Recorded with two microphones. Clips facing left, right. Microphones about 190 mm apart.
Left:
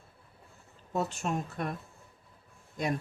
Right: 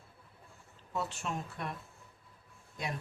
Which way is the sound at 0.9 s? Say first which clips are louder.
Left 5 dB; 45° left (ahead or behind).